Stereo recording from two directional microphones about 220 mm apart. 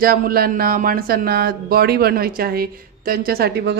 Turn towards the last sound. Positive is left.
turn(degrees=-45)  # may be behind; listen again after turning